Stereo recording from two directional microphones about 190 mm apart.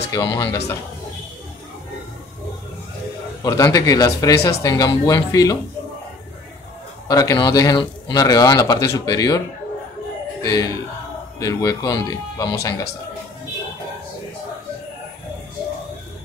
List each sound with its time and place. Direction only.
0.1 s speech: 20° left (ahead or behind)
3.4 s speech: 20° left (ahead or behind)
7.1 s speech: 20° left (ahead or behind)
10.4 s speech: 20° left (ahead or behind)